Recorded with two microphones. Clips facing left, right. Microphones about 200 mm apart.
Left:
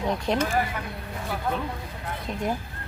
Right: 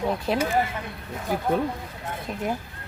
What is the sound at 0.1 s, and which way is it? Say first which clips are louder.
Speech: left 3 dB; 5° right (ahead or behind).